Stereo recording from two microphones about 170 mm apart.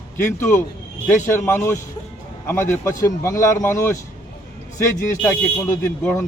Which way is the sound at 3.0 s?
15° left (ahead or behind).